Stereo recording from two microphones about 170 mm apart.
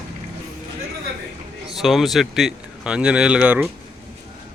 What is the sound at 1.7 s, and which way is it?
Speech, centre (ahead or behind).